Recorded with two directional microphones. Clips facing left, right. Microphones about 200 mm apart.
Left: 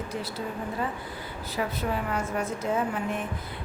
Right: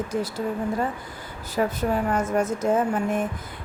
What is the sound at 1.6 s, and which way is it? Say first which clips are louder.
A woman's voice: right 6 dB; 45° right (ahead or behind).